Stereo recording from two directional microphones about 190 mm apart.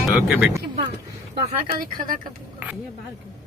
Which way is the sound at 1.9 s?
45° right (ahead or behind).